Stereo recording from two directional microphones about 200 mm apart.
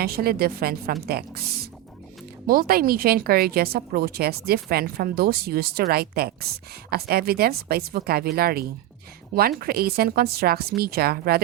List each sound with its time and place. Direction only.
0.0 s a woman's voice: 50° right (ahead or behind)